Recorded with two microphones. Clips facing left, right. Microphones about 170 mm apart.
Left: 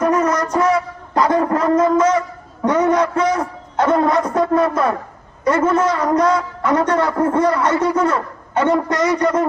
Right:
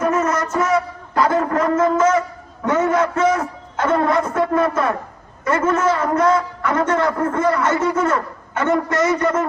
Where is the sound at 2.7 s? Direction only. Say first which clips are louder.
Left 1 dB; 25° right (ahead or behind).